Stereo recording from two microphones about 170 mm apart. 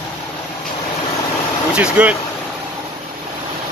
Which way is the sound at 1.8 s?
5° right (ahead or behind).